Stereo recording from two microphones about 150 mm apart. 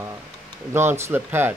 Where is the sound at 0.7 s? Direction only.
15° right (ahead or behind).